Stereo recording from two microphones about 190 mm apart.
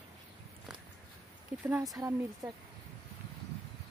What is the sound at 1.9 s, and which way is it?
Speech, 15° right (ahead or behind).